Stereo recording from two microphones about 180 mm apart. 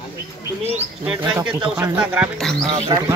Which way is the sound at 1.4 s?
10° right (ahead or behind).